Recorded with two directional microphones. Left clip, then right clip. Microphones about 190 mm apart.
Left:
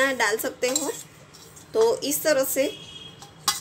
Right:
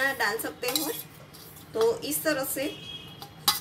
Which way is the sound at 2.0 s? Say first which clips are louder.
Left 6 dB; 40° left (ahead or behind).